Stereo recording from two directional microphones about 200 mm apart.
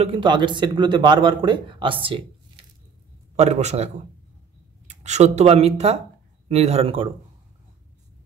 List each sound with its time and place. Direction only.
0.0 s speech: 25° right (ahead or behind)
3.3 s a man's voice: 35° right (ahead or behind)